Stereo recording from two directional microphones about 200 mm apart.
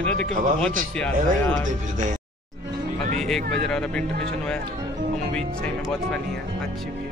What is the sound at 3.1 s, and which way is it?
Vehicle, centre (ahead or behind).